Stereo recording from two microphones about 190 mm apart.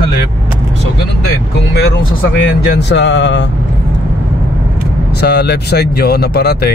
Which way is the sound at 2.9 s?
70° left (ahead or behind).